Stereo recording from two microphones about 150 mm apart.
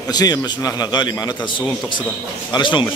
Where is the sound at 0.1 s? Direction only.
25° left (ahead or behind).